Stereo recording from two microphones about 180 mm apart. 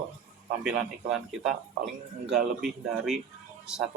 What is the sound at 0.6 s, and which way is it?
A man's voice, 5° right (ahead or behind).